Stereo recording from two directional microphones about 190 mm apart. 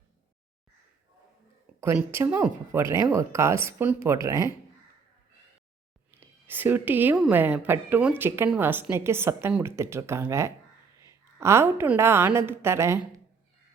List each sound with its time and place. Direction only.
1.8 s a woman's voice: 10° right (ahead or behind)
6.1 s a woman's voice: 10° right (ahead or behind)